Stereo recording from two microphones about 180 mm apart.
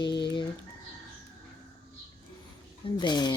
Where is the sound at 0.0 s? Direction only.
25° left (ahead or behind).